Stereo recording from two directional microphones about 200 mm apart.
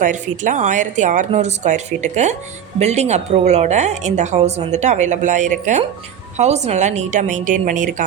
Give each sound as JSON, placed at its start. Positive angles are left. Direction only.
{"t": 0.0, "sound": "a woman's voice", "side_deg": -40}